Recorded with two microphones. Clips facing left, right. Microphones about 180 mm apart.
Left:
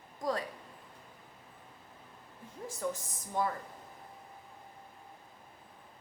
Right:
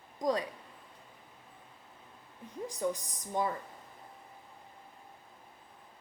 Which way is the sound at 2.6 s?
15° right (ahead or behind).